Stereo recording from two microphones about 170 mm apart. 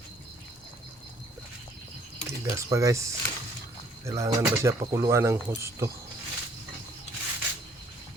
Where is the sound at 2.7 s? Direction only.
20° right (ahead or behind).